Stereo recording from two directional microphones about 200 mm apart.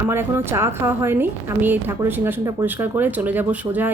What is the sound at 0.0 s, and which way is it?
A woman's voice, 10° right (ahead or behind).